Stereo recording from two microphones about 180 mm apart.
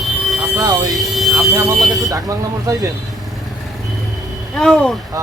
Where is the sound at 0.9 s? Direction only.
Centre (ahead or behind).